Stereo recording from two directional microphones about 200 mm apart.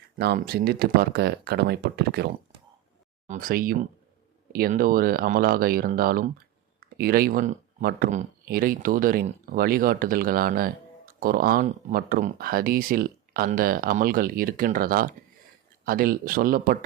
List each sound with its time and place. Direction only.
0.2 s speech: 55° right (ahead or behind)